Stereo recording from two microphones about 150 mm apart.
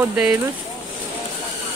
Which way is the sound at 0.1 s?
5° right (ahead or behind).